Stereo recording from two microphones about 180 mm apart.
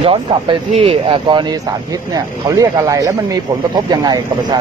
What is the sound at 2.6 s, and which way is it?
Speech, 20° right (ahead or behind).